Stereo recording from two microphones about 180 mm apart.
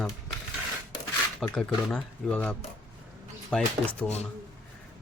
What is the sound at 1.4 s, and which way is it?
Speech, centre (ahead or behind).